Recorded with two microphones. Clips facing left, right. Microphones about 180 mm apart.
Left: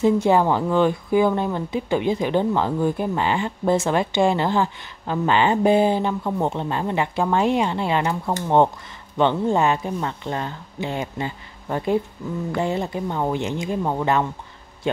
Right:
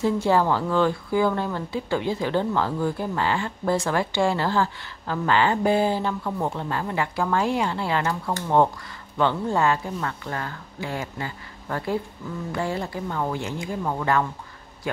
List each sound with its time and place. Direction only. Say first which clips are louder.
0.0 s speech: left 4 dB; 20° left (ahead or behind)